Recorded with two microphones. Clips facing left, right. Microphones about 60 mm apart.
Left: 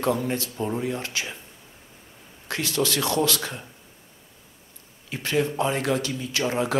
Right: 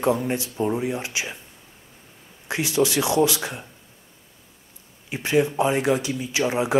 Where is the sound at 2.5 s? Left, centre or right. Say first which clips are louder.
Right 4 dB; centre.